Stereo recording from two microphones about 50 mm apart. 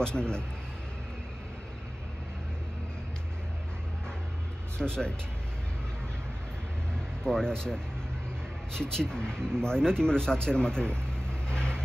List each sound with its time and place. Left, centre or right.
0.0 s speech: centre
4.7 s speech: centre
7.2 s speech: centre
8.9 s speech: centre